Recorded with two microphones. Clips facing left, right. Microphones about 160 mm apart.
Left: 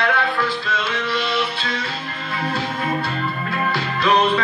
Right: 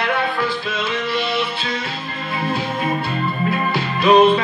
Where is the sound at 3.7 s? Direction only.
20° right (ahead or behind).